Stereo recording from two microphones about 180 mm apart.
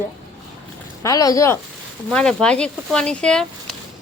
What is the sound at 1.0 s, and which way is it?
Speech, 20° left (ahead or behind).